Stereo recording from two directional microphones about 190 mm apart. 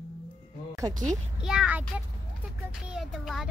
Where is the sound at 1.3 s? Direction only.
5° right (ahead or behind).